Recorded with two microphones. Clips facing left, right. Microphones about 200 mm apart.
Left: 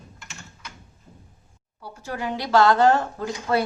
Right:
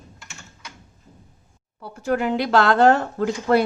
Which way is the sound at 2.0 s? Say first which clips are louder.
Right 8 dB; 55° right (ahead or behind).